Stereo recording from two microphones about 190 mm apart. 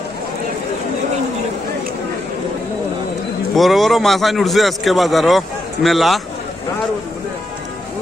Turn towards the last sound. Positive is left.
turn(degrees=0)  # may be behind; listen again after turning